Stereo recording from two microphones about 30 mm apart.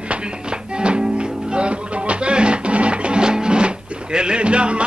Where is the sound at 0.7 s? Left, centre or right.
Right.